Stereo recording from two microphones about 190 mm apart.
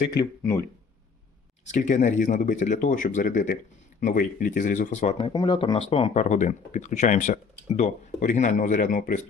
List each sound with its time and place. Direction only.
1.6 s speech: 40° left (ahead or behind)
5.3 s speech: 20° left (ahead or behind)
5.5 s speech: 30° left (ahead or behind); by 9.3 s 45° left (ahead or behind)